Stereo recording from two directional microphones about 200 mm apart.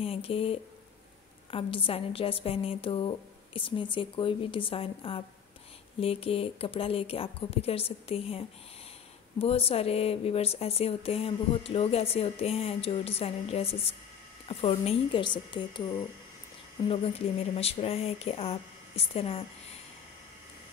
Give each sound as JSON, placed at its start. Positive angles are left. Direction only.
{"t": 0.0, "sound": "speech", "side_deg": 30}